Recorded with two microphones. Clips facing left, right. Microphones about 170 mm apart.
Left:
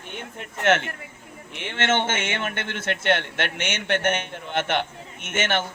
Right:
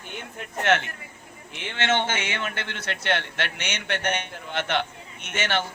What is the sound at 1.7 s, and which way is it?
A man's voice, 50° left (ahead or behind).